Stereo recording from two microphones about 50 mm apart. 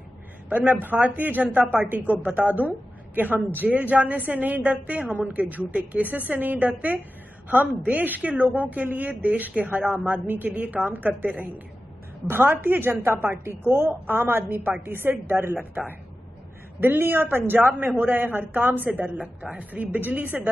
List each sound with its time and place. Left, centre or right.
0.5 s speech: right
12.3 s a woman's voice: right
16.8 s speech: right